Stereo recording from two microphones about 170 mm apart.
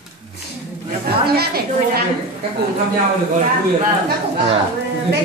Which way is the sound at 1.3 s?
65° right (ahead or behind).